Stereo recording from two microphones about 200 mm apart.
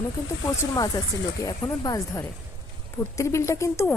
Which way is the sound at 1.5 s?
20° left (ahead or behind).